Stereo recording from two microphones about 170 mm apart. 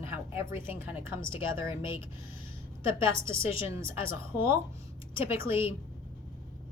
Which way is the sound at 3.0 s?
15° right (ahead or behind).